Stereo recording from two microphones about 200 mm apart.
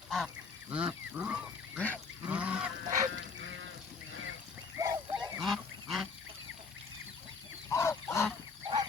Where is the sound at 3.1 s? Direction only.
70° right (ahead or behind).